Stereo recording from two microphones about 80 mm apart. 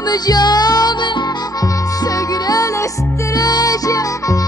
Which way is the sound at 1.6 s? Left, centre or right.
Left.